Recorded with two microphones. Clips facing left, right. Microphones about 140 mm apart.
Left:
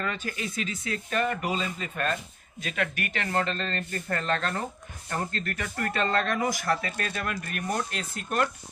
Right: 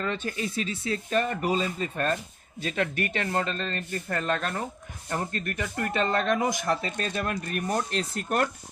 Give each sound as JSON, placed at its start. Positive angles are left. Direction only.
{"t": 0.0, "sound": "speech", "side_deg": -25}
{"t": 3.3, "sound": "speech", "side_deg": -10}